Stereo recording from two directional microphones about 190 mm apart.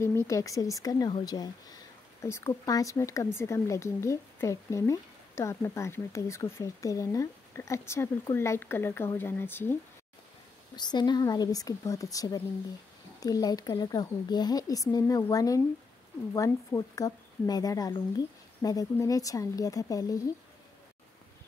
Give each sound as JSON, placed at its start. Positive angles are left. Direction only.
{"t": 0.0, "sound": "speech", "side_deg": 15}
{"t": 10.8, "sound": "speech", "side_deg": 20}